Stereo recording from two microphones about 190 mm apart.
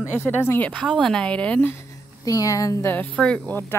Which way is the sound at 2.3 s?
15° left (ahead or behind).